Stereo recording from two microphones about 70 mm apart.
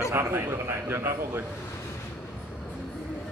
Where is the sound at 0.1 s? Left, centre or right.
Right.